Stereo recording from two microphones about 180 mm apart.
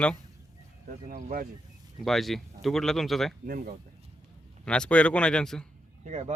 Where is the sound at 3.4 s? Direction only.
50° right (ahead or behind).